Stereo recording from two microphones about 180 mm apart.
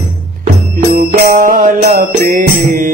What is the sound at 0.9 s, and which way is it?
Music, 50° right (ahead or behind).